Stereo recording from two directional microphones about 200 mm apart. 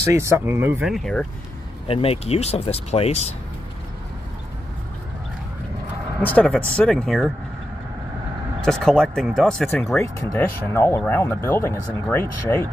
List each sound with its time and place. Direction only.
0.0 s speech: 15° right (ahead or behind); by 1.2 s centre (ahead or behind)
1.9 s speech: 30° left (ahead or behind)
6.2 s speech: 5° left (ahead or behind)
8.5 s speech: centre (ahead or behind)